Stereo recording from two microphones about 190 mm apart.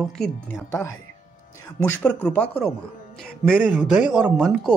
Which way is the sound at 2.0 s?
10° left (ahead or behind).